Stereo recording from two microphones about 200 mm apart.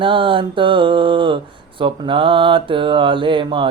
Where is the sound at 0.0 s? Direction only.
25° right (ahead or behind).